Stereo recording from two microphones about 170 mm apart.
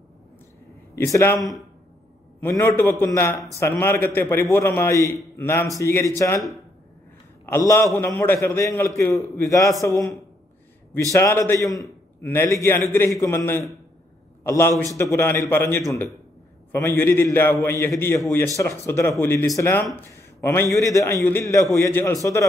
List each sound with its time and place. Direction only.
0.9 s a man's voice: 15° left (ahead or behind)
7.4 s a man's voice: 15° left (ahead or behind)
11.1 s a man's voice: 15° left (ahead or behind)